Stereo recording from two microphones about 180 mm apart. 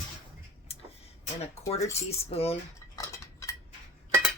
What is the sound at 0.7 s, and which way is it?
Tick-tock, 35° left (ahead or behind).